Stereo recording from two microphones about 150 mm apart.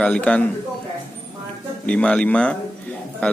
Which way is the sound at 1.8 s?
5° left (ahead or behind).